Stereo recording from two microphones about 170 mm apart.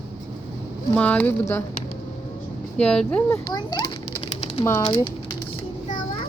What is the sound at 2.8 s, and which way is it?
Speech, 5° left (ahead or behind).